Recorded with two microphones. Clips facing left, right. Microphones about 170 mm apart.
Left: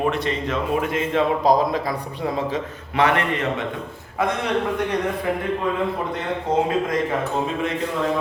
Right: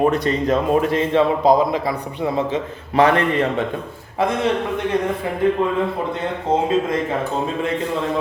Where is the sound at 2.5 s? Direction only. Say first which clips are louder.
Right 4 dB; 30° right (ahead or behind).